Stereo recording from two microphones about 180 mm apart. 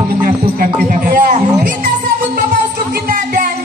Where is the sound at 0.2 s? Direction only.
50° right (ahead or behind).